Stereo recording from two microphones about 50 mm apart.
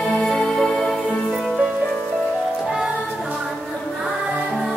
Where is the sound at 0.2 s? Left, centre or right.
Centre.